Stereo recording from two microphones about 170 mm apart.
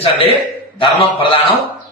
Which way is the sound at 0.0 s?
30° left (ahead or behind).